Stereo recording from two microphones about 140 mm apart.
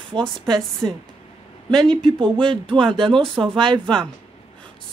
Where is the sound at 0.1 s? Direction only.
30° right (ahead or behind).